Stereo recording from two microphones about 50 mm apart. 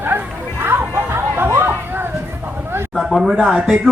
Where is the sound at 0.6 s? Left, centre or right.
Right.